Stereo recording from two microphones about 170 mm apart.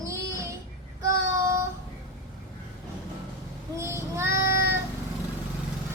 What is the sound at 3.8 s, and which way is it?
Child singing, 15° right (ahead or behind).